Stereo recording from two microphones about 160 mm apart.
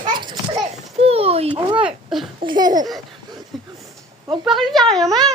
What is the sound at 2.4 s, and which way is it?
Babbling, 30° right (ahead or behind).